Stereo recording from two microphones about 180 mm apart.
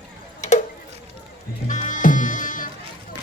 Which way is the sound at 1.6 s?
45° left (ahead or behind).